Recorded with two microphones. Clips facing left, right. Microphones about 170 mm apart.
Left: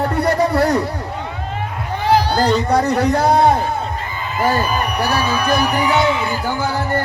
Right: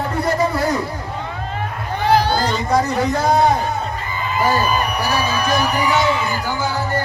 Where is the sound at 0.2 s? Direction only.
65° left (ahead or behind).